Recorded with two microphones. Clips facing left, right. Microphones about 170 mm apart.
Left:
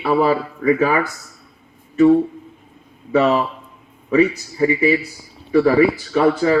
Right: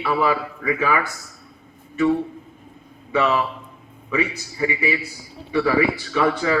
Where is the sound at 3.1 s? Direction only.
35° left (ahead or behind).